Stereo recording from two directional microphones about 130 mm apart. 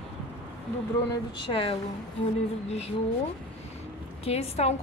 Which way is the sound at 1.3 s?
45° left (ahead or behind).